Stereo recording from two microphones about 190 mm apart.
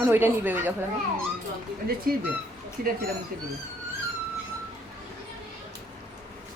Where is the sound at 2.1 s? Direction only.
50° right (ahead or behind).